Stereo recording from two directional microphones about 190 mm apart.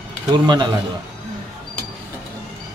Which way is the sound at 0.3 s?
25° right (ahead or behind).